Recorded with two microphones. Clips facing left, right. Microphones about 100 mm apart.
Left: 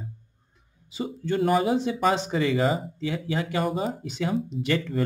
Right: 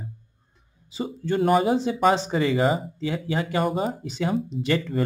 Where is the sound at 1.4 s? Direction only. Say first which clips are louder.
Right 2 dB; 50° right (ahead or behind).